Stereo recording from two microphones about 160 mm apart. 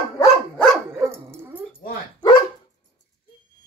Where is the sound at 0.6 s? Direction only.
5° left (ahead or behind).